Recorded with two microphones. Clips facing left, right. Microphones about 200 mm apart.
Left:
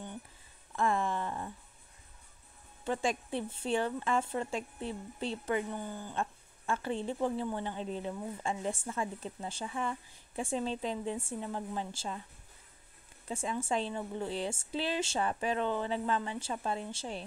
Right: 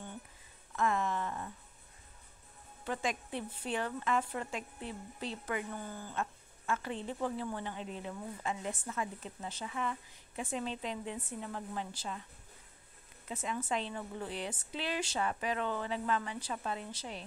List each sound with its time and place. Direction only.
0.7 s a sound: 30° left (ahead or behind)
2.8 s a woman's voice: 30° left (ahead or behind)
6.1 s a woman's voice: 30° left (ahead or behind)
13.3 s a woman's voice: 30° left (ahead or behind)